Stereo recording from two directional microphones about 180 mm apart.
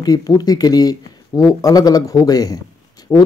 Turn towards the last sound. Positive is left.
turn(degrees=15)  # may be behind; listen again after turning